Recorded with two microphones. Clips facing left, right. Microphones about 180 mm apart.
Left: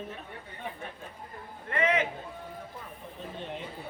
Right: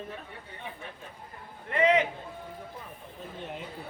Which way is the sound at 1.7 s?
20° right (ahead or behind).